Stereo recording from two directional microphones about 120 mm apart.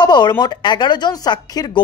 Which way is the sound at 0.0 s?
40° left (ahead or behind).